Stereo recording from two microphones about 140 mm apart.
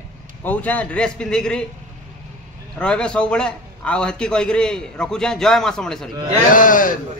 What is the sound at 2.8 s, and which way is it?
A man's voice, 5° left (ahead or behind).